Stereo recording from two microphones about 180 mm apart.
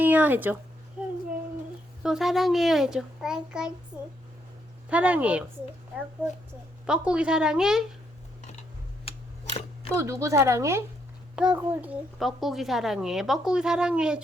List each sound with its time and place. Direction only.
0.0 s speech: 10° right (ahead or behind)
1.0 s a sound: 5° right (ahead or behind)
2.0 s a woman's voice: centre (ahead or behind)
6.8 s a woman's voice: 5° right (ahead or behind)
9.0 s a sound: 35° left (ahead or behind)
9.9 s a woman's voice: 15° right (ahead or behind)